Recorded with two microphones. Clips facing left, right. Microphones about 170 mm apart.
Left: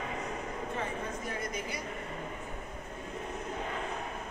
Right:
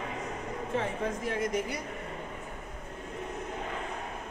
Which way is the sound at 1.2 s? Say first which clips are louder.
Right 6 dB; 85° right.